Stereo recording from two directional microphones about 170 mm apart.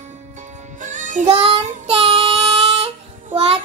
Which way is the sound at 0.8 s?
45° right (ahead or behind).